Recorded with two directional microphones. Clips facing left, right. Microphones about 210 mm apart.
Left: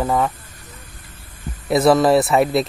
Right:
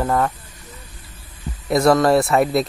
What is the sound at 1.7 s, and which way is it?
Speech, centre (ahead or behind).